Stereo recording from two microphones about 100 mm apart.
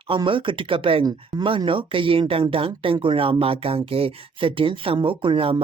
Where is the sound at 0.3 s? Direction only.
60° right (ahead or behind).